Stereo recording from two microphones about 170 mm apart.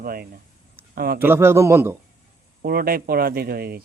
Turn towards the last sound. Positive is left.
turn(degrees=-65)  # may be behind; listen again after turning